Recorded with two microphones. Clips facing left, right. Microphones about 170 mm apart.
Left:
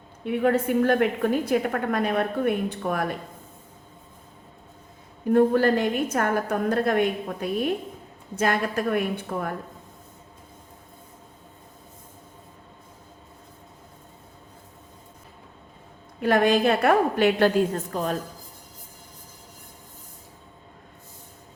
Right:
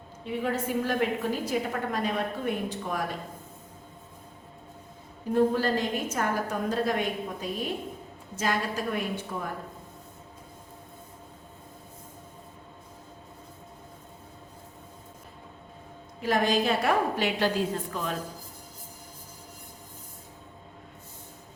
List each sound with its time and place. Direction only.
0.3 s a woman's voice: 60° left (ahead or behind)
5.3 s a woman's voice: 60° left (ahead or behind)
16.2 s a woman's voice: 60° left (ahead or behind); by 18.2 s 40° left (ahead or behind)